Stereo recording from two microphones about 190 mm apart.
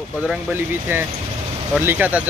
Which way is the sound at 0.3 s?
10° right (ahead or behind).